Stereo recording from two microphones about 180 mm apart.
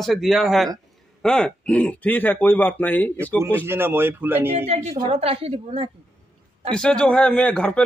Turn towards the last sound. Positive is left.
turn(degrees=5)  # may be behind; listen again after turning